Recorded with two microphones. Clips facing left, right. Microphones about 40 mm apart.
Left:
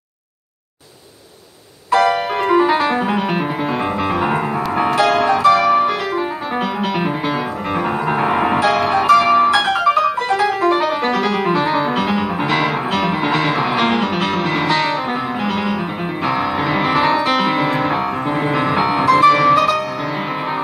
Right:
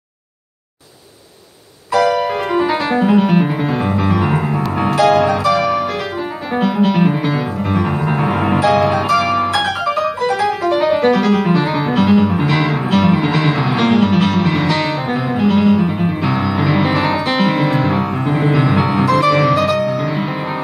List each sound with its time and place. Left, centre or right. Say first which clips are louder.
2.5 s music: left 3 dB; centre
5.1 s music: left 1 dB; left
6.6 s music: right 7 dB; centre
8.2 s music: even; centre
17.1 s music: even; centre
19.5 s music: left 1 dB; left